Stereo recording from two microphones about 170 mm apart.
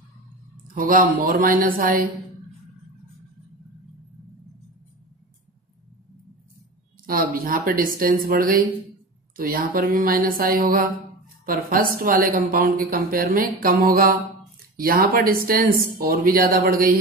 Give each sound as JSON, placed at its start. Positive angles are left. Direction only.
{"t": 0.7, "sound": "a woman's voice", "side_deg": -55}
{"t": 7.1, "sound": "a woman's voice", "side_deg": -55}